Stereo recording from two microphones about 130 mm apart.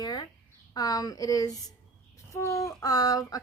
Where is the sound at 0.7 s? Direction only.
30° left (ahead or behind).